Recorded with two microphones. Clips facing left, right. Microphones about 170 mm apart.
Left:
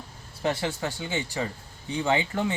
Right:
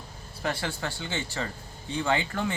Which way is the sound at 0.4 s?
20° left (ahead or behind).